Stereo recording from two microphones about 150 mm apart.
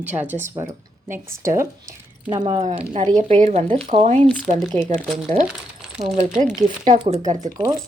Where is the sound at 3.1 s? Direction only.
55° right (ahead or behind).